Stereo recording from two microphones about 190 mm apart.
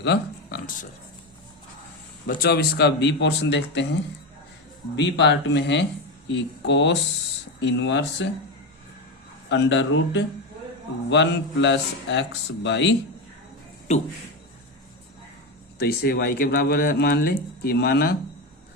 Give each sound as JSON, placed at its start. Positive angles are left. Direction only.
{"t": 0.0, "sound": "a sound", "side_deg": 65}
{"t": 2.2, "sound": "speech", "side_deg": 55}
{"t": 4.9, "sound": "a man's voice", "side_deg": 65}
{"t": 9.5, "sound": "a man's voice", "side_deg": 70}
{"t": 15.8, "sound": "speech", "side_deg": 55}